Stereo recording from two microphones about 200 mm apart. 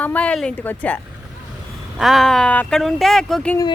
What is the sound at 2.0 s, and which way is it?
Speech, centre (ahead or behind).